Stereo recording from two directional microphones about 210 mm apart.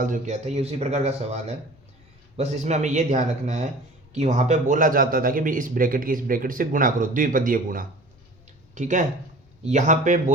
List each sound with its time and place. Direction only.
0.0 s a man's voice: 35° right (ahead or behind)